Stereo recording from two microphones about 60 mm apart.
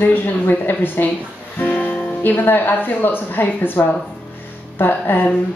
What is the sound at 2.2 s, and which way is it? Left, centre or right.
Speech, left.